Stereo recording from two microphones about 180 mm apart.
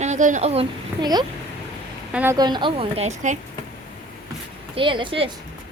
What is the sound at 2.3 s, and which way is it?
A woman's voice, 25° right (ahead or behind).